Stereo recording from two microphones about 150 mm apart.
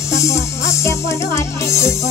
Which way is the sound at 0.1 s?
20° left (ahead or behind).